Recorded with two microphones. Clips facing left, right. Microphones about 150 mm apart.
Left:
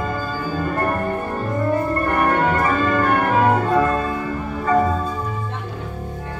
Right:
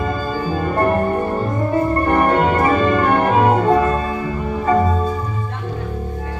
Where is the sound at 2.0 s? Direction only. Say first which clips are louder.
Right 2 dB; 25° right (ahead or behind).